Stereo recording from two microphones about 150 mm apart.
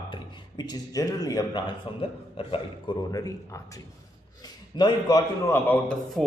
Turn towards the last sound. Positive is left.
turn(degrees=10)  # may be behind; listen again after turning